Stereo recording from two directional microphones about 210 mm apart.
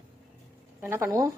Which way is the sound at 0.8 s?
10° right (ahead or behind).